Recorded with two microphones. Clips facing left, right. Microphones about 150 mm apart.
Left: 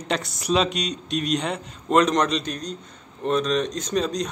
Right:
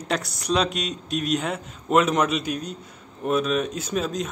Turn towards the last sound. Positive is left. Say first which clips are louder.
# left 2 dB
turn(degrees=-5)  # may be behind; listen again after turning